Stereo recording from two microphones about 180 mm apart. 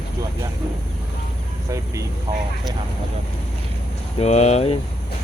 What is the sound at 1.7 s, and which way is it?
Speech, 15° right (ahead or behind).